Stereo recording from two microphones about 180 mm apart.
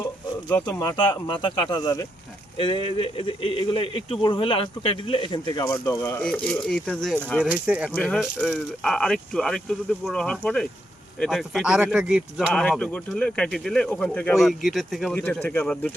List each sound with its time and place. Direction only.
0.7 s speech: 20° left (ahead or behind)
7.4 s speech: 5° right (ahead or behind)
7.9 s speech: 5° left (ahead or behind)